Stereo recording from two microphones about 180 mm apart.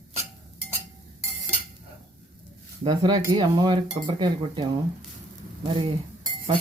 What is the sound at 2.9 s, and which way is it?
Dishes, 25° right (ahead or behind).